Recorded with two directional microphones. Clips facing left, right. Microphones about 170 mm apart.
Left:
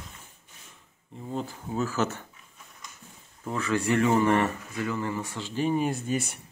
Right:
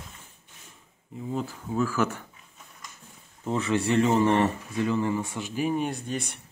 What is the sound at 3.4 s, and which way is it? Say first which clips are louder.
Speech: right 2 dB; 20° right (ahead or behind).